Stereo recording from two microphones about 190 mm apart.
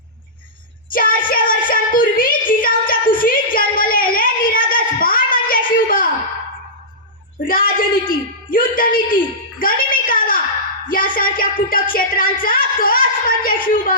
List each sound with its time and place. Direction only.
0.9 s music: 45° left (ahead or behind)
3.8 s child singing: 50° left (ahead or behind)
7.4 s a sound: 50° left (ahead or behind)
10.8 s music: 45° left (ahead or behind)